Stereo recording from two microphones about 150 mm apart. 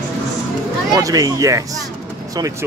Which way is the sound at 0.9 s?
25° right (ahead or behind).